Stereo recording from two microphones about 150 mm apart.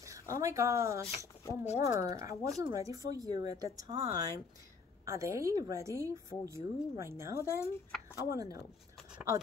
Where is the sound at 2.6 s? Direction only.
25° right (ahead or behind).